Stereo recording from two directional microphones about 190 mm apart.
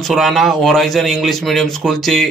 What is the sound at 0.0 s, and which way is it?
Speech, centre (ahead or behind).